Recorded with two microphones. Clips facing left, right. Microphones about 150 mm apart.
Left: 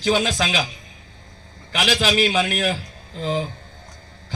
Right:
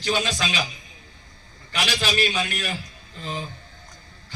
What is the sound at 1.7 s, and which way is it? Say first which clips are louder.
Speech: left 5 dB; 90° left.